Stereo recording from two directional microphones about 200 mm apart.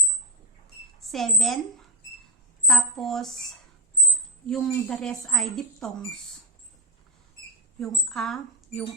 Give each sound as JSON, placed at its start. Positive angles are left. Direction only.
{"t": 1.0, "sound": "speech", "side_deg": 0}
{"t": 2.6, "sound": "speech", "side_deg": 0}
{"t": 4.4, "sound": "speech", "side_deg": 0}
{"t": 7.8, "sound": "speech", "side_deg": 0}